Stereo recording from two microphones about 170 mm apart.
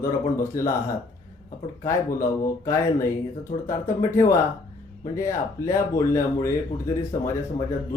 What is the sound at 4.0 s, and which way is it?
Speech, 15° left (ahead or behind).